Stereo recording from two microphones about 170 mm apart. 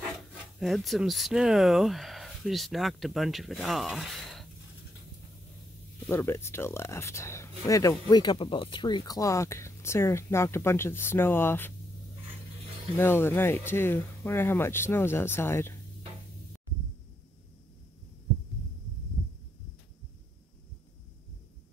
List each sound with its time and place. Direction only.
0.6 s speech: centre (ahead or behind)
6.0 s speech: 15° left (ahead or behind)
12.9 s speech: 15° left (ahead or behind)